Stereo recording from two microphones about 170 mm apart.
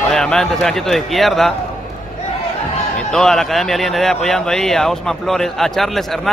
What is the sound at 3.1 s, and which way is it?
A man's voice, 5° left (ahead or behind).